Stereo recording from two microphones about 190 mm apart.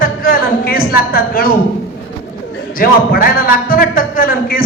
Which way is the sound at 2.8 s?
50° left (ahead or behind).